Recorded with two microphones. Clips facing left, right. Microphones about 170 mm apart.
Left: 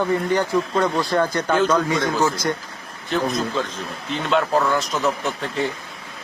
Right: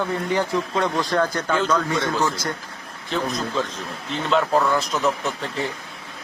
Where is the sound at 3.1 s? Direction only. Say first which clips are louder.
Left 2 dB; centre (ahead or behind).